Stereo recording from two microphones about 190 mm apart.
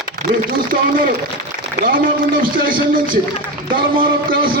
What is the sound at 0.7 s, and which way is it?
A man's voice, 45° right (ahead or behind).